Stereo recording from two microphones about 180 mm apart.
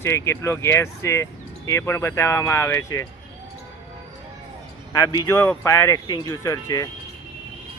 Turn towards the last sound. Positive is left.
turn(degrees=20)  # may be behind; listen again after turning